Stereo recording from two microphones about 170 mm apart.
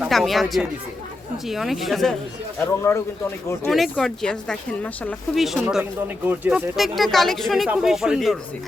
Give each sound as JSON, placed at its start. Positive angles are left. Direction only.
{"t": 0.0, "sound": "speech", "side_deg": 0}
{"t": 2.9, "sound": "speech", "side_deg": 20}
{"t": 3.7, "sound": "speech", "side_deg": 0}